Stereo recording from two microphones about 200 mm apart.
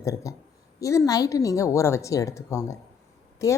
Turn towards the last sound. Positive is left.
turn(degrees=15)  # may be behind; listen again after turning